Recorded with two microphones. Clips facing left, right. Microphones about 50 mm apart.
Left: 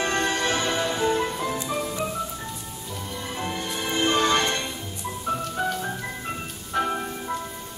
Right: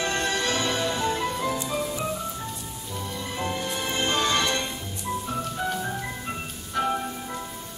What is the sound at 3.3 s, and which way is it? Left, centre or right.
Music, centre.